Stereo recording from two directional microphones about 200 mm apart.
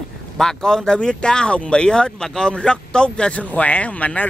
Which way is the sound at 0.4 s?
5° left (ahead or behind).